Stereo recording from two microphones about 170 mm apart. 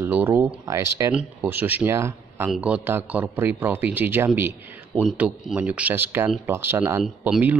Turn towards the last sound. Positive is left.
turn(degrees=-5)  # may be behind; listen again after turning